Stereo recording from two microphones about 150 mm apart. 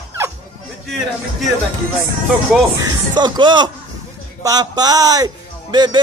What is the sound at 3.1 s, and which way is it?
A man's voice, 30° right (ahead or behind).